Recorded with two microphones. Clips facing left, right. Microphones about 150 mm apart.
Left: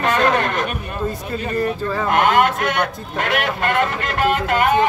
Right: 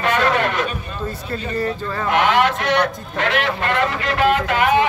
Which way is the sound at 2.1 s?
45° left (ahead or behind).